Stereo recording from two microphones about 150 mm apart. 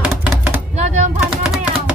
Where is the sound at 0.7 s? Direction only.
50° right (ahead or behind).